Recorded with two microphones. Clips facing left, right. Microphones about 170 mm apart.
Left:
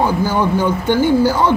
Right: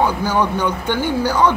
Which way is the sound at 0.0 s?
10° left (ahead or behind).